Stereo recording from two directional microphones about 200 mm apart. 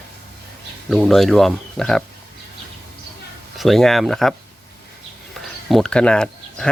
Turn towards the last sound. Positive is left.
turn(degrees=5)  # may be behind; listen again after turning